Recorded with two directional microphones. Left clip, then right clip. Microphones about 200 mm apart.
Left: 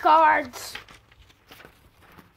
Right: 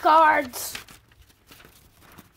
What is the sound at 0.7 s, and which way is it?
Tearing, 60° right (ahead or behind).